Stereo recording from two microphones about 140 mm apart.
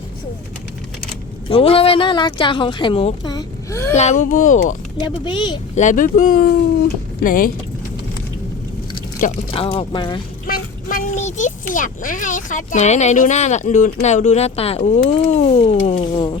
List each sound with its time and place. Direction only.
1.5 s a woman's voice: 45° left (ahead or behind)
3.2 s a sound: 25° left (ahead or behind)
3.9 s speech: 55° left (ahead or behind)
4.9 s a woman's voice: 35° left (ahead or behind)
5.7 s speech: 65° left (ahead or behind)
9.5 s a woman's voice: 40° left (ahead or behind)
10.4 s a child's voice: 85° left; by 16.0 s 50° left (ahead or behind)
16.0 s a woman's voice: 40° left (ahead or behind)